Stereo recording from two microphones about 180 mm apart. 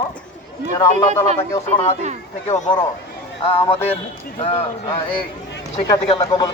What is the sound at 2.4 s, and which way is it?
Speech, 40° left (ahead or behind).